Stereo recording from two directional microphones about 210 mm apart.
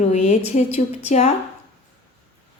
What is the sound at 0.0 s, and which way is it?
Speech, 30° left (ahead or behind).